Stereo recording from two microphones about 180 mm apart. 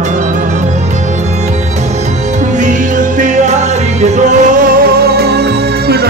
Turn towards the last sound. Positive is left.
turn(degrees=-60)  # may be behind; listen again after turning